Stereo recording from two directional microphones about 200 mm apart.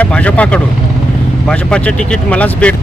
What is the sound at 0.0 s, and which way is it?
Speech, 5° left (ahead or behind).